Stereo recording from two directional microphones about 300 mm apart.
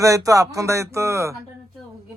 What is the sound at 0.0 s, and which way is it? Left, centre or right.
Speech, centre.